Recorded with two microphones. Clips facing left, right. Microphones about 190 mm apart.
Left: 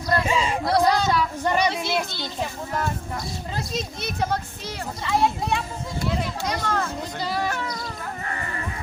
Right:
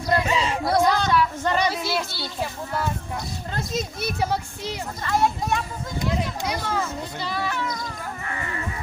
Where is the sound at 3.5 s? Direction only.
5° right (ahead or behind).